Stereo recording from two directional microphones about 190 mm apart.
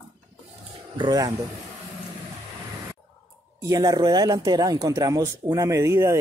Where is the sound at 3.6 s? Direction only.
20° right (ahead or behind).